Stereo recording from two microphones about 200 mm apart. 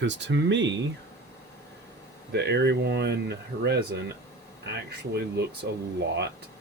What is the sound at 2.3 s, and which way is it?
Speech, 60° right (ahead or behind).